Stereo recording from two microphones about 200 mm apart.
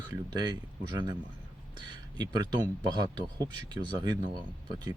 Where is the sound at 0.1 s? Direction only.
20° right (ahead or behind).